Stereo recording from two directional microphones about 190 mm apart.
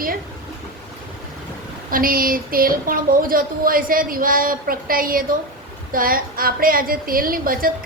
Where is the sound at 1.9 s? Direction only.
50° right (ahead or behind).